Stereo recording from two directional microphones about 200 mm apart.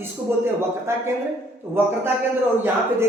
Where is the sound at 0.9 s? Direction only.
15° right (ahead or behind).